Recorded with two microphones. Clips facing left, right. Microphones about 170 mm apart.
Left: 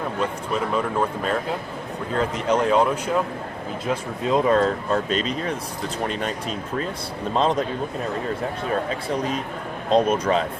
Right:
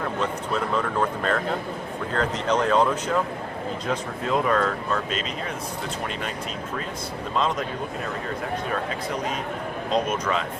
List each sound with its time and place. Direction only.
0.2 s speech: 10° left (ahead or behind)
4.3 s speech: 30° left (ahead or behind)
7.3 s speech: 35° left (ahead or behind)
9.9 s speech: 30° left (ahead or behind)